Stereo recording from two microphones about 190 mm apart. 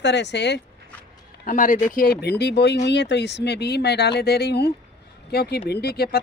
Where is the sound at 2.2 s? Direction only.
60° left (ahead or behind).